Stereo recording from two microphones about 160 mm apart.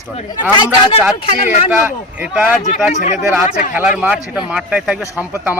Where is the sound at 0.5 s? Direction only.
30° left (ahead or behind).